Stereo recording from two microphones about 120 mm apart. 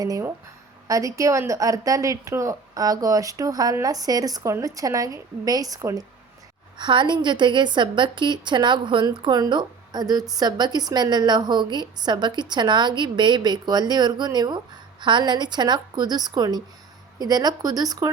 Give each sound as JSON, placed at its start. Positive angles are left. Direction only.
{"t": 0.0, "sound": "a woman's voice", "side_deg": -30}
{"t": 6.7, "sound": "a woman's voice", "side_deg": -40}